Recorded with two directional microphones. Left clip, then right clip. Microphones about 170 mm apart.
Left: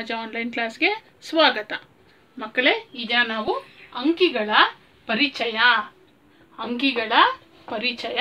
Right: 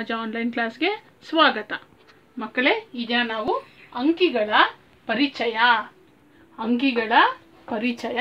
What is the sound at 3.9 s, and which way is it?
A woman's voice, 40° right (ahead or behind).